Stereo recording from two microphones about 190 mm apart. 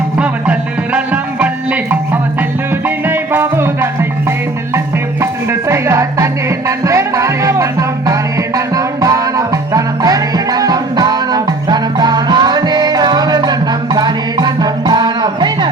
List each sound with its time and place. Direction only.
0.9 s music: 10° right (ahead or behind)
5.2 s music: 15° right (ahead or behind)